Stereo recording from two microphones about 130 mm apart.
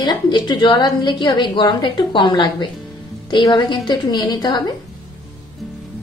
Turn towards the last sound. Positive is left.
turn(degrees=35)  # may be behind; listen again after turning